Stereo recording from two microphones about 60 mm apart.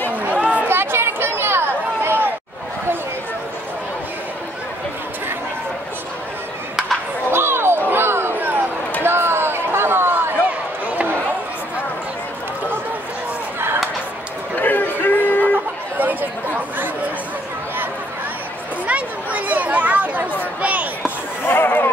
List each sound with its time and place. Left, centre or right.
0.1 s chatter: right
0.7 s a sound: right
7.2 s a sound: right
14.5 s chatter: left
16.0 s chatter: right
18.9 s chatter: right
20.6 s basketball bounce: right
21.5 s chatter: left